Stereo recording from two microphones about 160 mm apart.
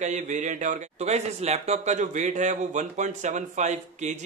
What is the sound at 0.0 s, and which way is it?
A man's voice, 50° right (ahead or behind).